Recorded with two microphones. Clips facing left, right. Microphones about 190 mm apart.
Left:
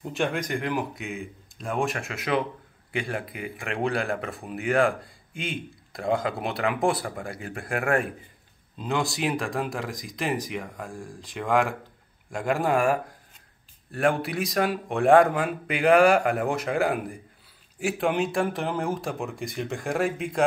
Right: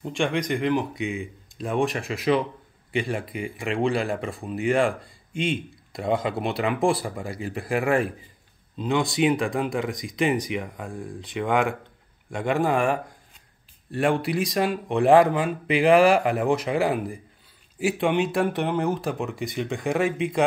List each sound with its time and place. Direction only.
0.0 s a man's voice: 5° left (ahead or behind)